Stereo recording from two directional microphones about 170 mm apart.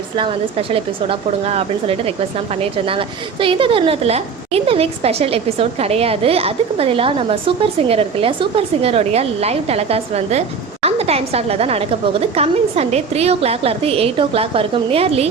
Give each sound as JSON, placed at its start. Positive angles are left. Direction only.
{"t": 0.7, "sound": "a woman's voice", "side_deg": -35}
{"t": 3.4, "sound": "a woman's voice", "side_deg": -30}